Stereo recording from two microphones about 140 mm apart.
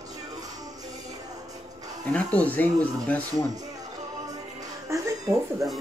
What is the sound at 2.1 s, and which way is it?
Speech, 10° left (ahead or behind).